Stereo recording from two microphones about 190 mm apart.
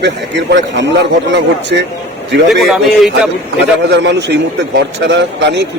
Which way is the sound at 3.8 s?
65° right (ahead or behind).